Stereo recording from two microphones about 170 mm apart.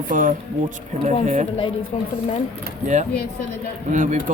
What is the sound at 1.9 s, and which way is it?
Speech, 40° left (ahead or behind).